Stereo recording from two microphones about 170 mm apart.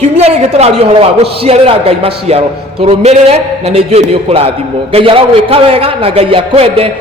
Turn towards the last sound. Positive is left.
turn(degrees=-35)  # may be behind; listen again after turning